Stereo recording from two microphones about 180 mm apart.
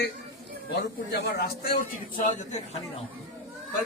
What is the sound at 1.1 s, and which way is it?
Speech, 60° left (ahead or behind).